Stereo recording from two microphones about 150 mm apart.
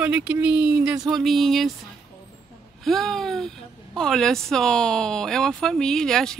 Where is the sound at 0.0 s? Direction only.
10° right (ahead or behind).